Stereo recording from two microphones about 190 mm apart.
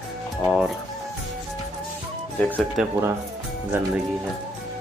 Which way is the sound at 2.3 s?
10° left (ahead or behind).